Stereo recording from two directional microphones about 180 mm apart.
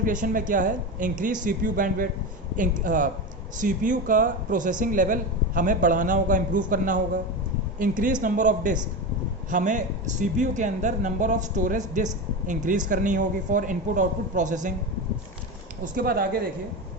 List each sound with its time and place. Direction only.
0.0 s speech: 45° right (ahead or behind)
15.8 s speech: 55° right (ahead or behind)